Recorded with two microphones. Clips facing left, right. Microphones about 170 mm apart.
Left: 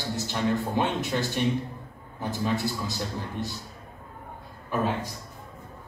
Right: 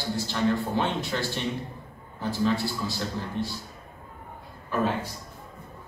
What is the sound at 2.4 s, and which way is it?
Speech, 20° left (ahead or behind).